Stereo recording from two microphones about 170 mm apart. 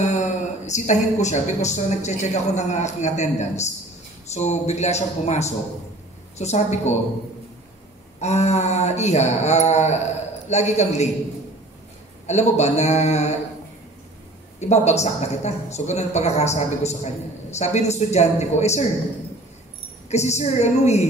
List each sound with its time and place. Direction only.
0.0 s a woman's voice: 45° left (ahead or behind)
8.2 s a woman's voice: 40° left (ahead or behind)
12.3 s a woman's voice: 40° left (ahead or behind)
14.6 s a woman's voice: 40° left (ahead or behind)
20.1 s a woman's voice: 40° left (ahead or behind)